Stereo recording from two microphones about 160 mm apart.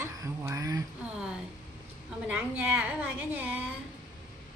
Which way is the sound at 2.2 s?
10° right (ahead or behind).